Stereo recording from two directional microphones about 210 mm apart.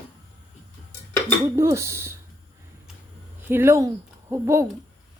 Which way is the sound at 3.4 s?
10° right (ahead or behind).